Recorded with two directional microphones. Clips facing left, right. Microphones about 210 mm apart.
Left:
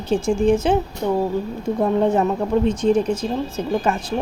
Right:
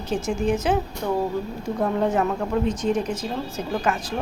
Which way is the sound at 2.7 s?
30° left (ahead or behind).